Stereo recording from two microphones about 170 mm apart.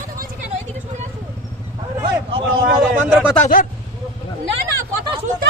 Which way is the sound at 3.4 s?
50° left (ahead or behind).